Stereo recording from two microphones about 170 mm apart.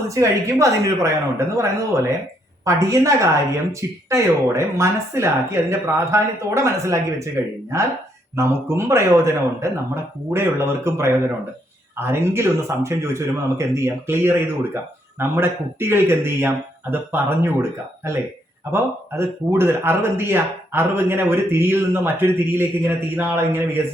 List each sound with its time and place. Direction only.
0.1 s a woman's voice: 20° right (ahead or behind)
8.4 s a man's voice: 15° right (ahead or behind)